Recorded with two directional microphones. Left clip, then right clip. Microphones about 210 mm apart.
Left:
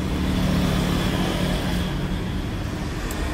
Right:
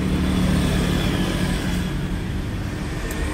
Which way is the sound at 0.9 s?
50° left (ahead or behind).